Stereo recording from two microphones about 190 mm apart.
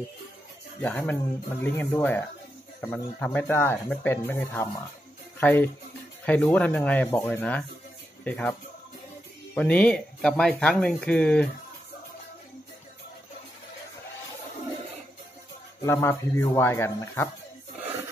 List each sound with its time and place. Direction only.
0.8 s speech: 10° left (ahead or behind)
15.8 s speech: 15° left (ahead or behind)